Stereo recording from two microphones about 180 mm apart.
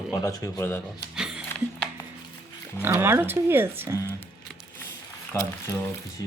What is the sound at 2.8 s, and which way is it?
Speech, 10° right (ahead or behind).